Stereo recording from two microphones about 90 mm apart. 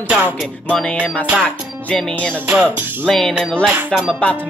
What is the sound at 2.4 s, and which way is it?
Music, 15° right (ahead or behind).